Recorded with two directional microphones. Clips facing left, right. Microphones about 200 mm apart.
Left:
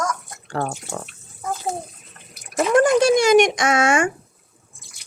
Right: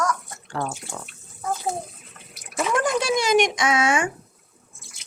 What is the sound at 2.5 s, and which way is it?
Speech, 40° left (ahead or behind).